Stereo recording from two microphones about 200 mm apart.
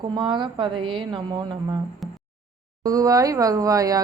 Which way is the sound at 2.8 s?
15° right (ahead or behind).